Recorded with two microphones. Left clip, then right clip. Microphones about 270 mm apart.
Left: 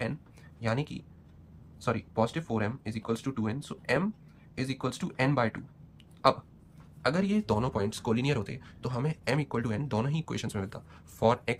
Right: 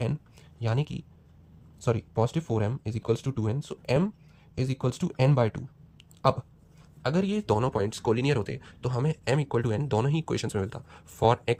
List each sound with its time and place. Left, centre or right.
0.6 s speech: right